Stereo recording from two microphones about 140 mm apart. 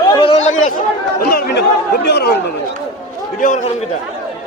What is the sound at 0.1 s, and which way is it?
Chatter, 40° left (ahead or behind).